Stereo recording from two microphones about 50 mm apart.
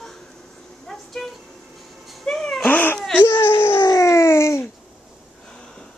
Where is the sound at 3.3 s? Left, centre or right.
Left.